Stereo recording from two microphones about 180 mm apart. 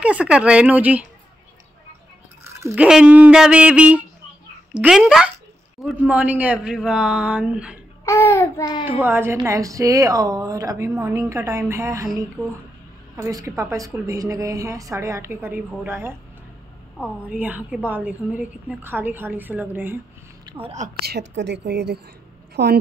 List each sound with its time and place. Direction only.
0.0 s speech: 5° right (ahead or behind)
2.4 s dog: 15° right (ahead or behind)
2.7 s speech: 5° right (ahead or behind)
8.0 s babbling: 15° left (ahead or behind)
8.8 s speech: 10° right (ahead or behind)
13.1 s speech: 15° right (ahead or behind)
20.6 s a woman's voice: 40° right (ahead or behind)
21.0 s a woman's voice: 75° right (ahead or behind)